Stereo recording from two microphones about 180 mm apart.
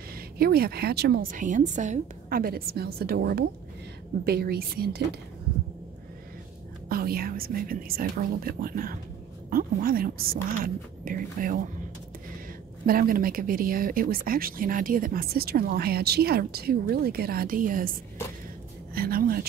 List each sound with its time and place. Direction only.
0.1 s a woman's voice: 60° right (ahead or behind)
6.9 s a woman's voice: 55° right (ahead or behind)
12.8 s speech: 50° right (ahead or behind)
18.9 s a woman's voice: 55° right (ahead or behind)